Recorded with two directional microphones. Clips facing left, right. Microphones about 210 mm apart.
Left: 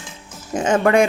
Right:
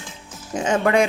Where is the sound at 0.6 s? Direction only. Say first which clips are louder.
Left 3 dB; 50° left (ahead or behind).